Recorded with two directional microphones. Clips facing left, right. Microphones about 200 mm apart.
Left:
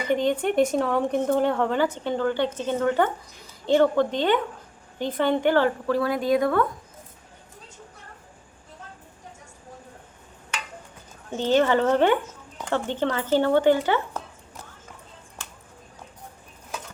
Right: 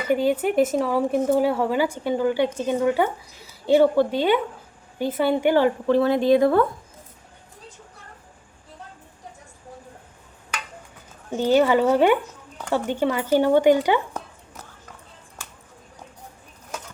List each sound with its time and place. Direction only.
0.0 s speech: 5° right (ahead or behind)
5.9 s speech: 25° right (ahead or behind)
11.3 s speech: 10° right (ahead or behind)